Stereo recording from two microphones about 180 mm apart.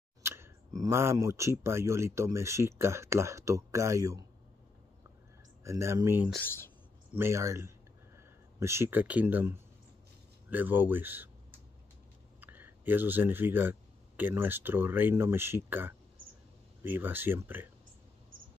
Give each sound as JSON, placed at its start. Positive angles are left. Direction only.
{"t": 0.2, "sound": "speech", "side_deg": -15}
{"t": 5.6, "sound": "speech", "side_deg": -15}
{"t": 6.4, "sound": "speech", "side_deg": 15}
{"t": 7.2, "sound": "speech", "side_deg": -15}